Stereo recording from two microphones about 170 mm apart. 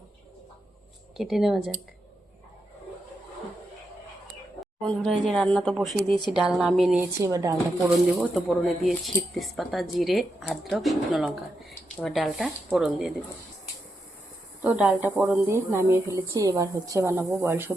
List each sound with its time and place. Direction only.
1.1 s speech: centre (ahead or behind)
5.2 s speech: 5° left (ahead or behind)
7.2 s speech: 20° right (ahead or behind)
7.9 s speech: centre (ahead or behind)
14.6 s a woman's voice: 10° right (ahead or behind)